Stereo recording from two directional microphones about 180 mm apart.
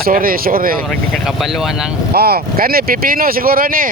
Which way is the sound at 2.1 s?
60° right (ahead or behind).